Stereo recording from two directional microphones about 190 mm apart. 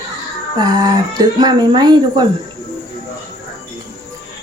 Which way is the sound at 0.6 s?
20° right (ahead or behind).